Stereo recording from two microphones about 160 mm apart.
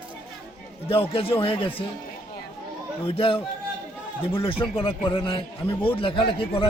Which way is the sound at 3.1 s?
35° left (ahead or behind).